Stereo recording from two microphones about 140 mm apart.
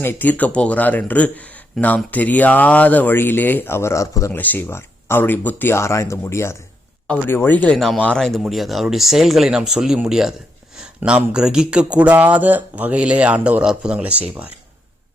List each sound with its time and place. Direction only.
0.0 s speech: 15° left (ahead or behind)
4.3 s speech: 10° left (ahead or behind); by 14.5 s 10° right (ahead or behind)